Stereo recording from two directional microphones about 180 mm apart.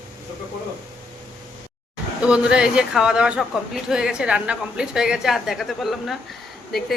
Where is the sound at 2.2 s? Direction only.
5° right (ahead or behind).